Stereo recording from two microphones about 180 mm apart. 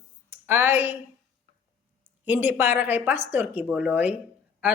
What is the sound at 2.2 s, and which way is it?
Speech, 10° right (ahead or behind).